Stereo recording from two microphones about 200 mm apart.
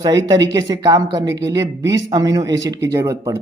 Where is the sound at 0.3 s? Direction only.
20° right (ahead or behind).